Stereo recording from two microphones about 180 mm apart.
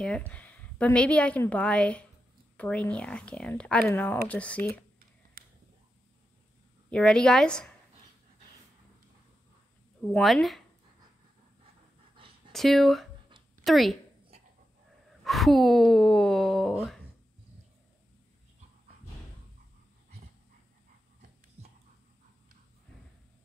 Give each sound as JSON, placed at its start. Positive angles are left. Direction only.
{"t": 0.0, "sound": "a woman's voice", "side_deg": 5}
{"t": 5.4, "sound": "a sound", "side_deg": -55}
{"t": 6.9, "sound": "speech", "side_deg": 5}
{"t": 10.0, "sound": "speech", "side_deg": 0}
{"t": 12.5, "sound": "speech", "side_deg": 0}
{"t": 15.2, "sound": "speech", "side_deg": 0}